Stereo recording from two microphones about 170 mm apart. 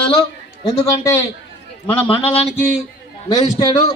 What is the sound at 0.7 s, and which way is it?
Speech, 20° left (ahead or behind).